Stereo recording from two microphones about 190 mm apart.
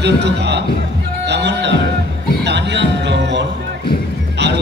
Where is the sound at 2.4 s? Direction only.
65° right (ahead or behind).